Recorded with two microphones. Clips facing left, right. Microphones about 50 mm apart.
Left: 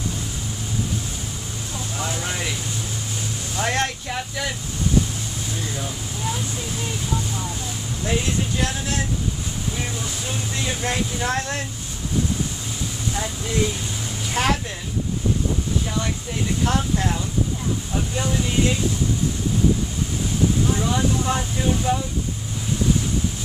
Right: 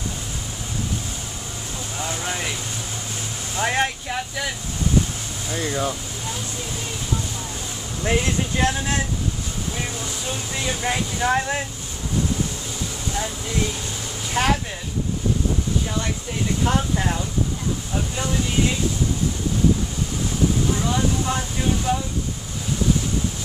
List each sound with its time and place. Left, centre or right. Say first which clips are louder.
2.1 s a sound: even; centre
3.5 s speech: right 2 dB; centre
5.6 s speech: right 9 dB; right
8.0 s speech: right 2 dB; right
10.5 s speech: right 2 dB; centre
14.3 s speech: right 1 dB; centre
16.6 s speech: even; centre
20.8 s speech: left 1 dB; centre